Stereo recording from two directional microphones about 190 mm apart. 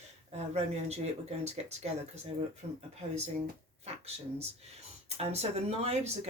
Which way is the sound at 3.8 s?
35° right (ahead or behind).